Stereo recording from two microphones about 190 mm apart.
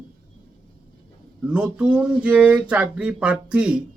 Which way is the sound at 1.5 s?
5° right (ahead or behind).